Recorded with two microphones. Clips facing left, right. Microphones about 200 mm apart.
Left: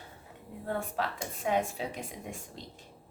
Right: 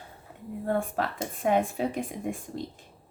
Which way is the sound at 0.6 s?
50° right (ahead or behind).